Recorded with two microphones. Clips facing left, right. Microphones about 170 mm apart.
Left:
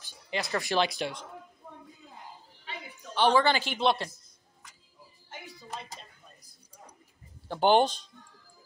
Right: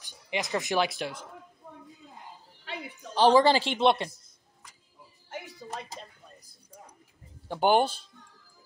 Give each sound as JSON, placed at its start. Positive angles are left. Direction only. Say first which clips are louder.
{"t": 0.0, "sound": "a sound", "louder": "right 1 dB", "side_deg": -15}
{"t": 0.7, "sound": "speech", "louder": "left 1 dB", "side_deg": 0}
{"t": 3.2, "sound": "speech", "louder": "right 4 dB", "side_deg": -35}
{"t": 7.4, "sound": "speech", "louder": "left 1 dB", "side_deg": -10}